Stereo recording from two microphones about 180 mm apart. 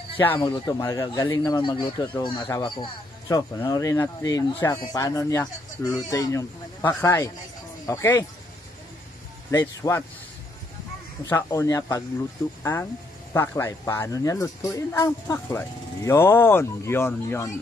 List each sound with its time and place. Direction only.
0.4 s speech: 25° left (ahead or behind)
9.5 s speech: 20° left (ahead or behind)
11.2 s speech: 15° left (ahead or behind)